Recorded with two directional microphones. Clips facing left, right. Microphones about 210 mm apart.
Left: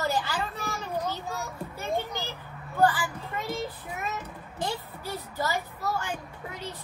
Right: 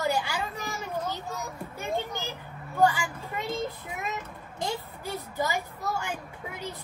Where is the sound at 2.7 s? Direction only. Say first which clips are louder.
Even; 15° right (ahead or behind).